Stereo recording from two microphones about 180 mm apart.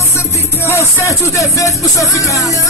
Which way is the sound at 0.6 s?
15° left (ahead or behind).